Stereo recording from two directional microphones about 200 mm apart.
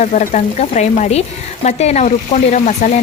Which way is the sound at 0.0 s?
35° left (ahead or behind).